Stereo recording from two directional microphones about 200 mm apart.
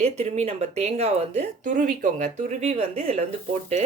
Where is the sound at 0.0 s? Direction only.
35° right (ahead or behind).